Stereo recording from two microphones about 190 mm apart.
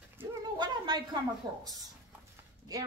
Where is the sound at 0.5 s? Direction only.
20° right (ahead or behind).